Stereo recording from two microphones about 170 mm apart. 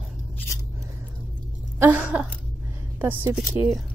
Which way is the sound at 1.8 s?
10° right (ahead or behind).